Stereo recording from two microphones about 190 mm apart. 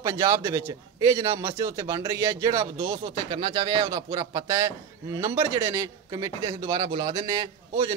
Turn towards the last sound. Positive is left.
turn(degrees=-20)  # may be behind; listen again after turning